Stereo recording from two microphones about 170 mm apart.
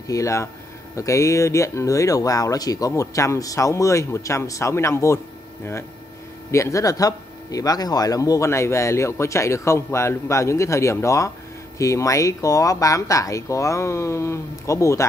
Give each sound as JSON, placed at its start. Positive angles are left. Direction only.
{"t": 0.1, "sound": "speech", "side_deg": 20}
{"t": 6.5, "sound": "speech", "side_deg": 20}